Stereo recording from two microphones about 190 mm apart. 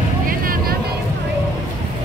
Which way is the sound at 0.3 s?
50° right (ahead or behind).